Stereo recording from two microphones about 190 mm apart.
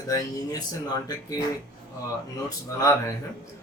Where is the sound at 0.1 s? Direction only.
20° left (ahead or behind).